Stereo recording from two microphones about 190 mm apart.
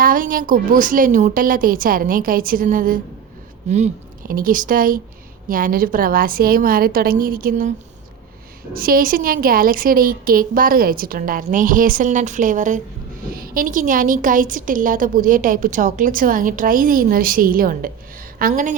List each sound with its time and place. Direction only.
0.0 s a woman's voice: 50° right (ahead or behind)
8.7 s a woman's voice: 50° right (ahead or behind)